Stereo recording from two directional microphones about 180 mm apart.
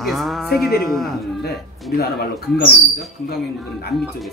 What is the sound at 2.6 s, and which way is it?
Speech, 60° left (ahead or behind).